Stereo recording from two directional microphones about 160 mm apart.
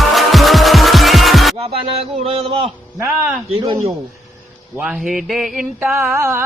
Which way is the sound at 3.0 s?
10° right (ahead or behind).